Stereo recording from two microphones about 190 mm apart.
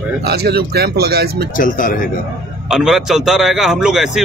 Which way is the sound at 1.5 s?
45° left (ahead or behind).